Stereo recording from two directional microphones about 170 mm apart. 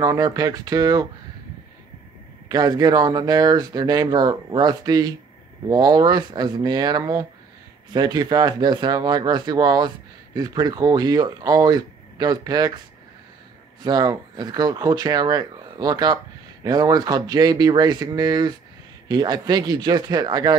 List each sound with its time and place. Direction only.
0.0 s speech: 20° right (ahead or behind)
2.4 s speech: 25° right (ahead or behind)
13.8 s speech: 25° right (ahead or behind)